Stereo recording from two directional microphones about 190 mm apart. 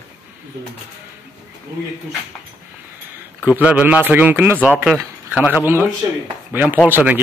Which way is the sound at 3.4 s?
5° right (ahead or behind).